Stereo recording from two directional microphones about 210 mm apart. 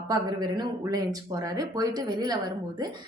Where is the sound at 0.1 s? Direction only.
20° right (ahead or behind).